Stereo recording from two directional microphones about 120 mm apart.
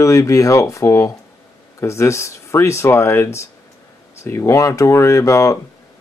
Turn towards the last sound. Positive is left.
turn(degrees=25)  # may be behind; listen again after turning